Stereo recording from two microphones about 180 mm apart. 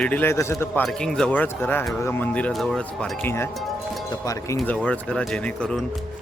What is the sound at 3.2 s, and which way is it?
A man's voice, 15° left (ahead or behind).